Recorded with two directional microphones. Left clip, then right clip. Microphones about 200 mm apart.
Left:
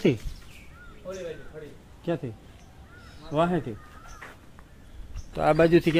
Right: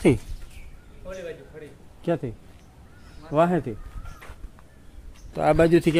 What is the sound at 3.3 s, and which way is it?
Speech, 35° right (ahead or behind).